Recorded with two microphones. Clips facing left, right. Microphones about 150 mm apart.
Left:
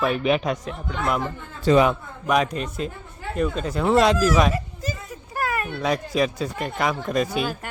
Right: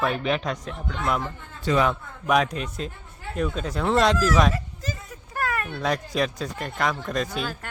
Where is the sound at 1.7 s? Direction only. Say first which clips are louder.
Left 4 dB; 15° left (ahead or behind).